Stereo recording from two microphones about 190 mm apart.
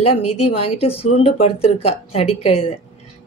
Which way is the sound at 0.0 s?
30° left (ahead or behind).